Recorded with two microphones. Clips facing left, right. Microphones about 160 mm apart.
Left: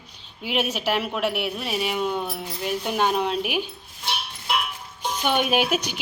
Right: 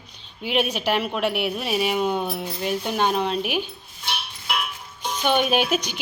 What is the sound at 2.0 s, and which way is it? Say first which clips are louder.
Speech: right 2 dB; 35° right (ahead or behind).